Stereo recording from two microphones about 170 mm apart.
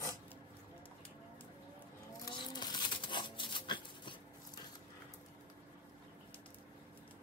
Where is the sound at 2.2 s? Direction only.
25° left (ahead or behind).